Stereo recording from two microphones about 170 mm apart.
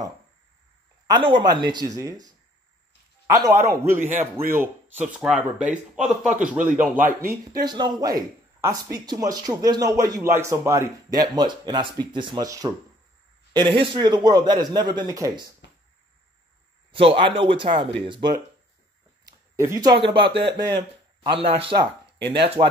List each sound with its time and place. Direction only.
1.0 s a man's voice: 30° right (ahead or behind)
3.3 s a man's voice: 20° right (ahead or behind)
16.9 s a man's voice: 30° right (ahead or behind)
19.2 s a sound: 15° right (ahead or behind)
20.0 s a man's voice: 30° right (ahead or behind)